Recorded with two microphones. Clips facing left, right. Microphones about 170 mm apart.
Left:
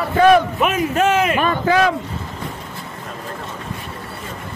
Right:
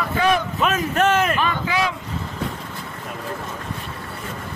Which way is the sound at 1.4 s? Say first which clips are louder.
Left 6 dB; 45° left (ahead or behind).